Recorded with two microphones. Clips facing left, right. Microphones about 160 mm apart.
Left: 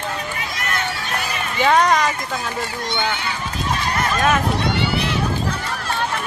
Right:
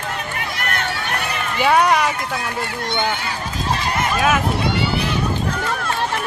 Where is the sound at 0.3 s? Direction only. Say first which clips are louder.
Right 1 dB; 60° right (ahead or behind).